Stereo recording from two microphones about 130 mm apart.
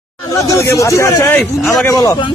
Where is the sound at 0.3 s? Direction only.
25° left (ahead or behind).